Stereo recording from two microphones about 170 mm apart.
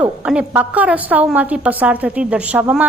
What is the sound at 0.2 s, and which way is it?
A woman's voice, 5° right (ahead or behind).